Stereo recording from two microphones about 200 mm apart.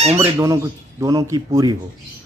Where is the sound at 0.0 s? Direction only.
30° right (ahead or behind).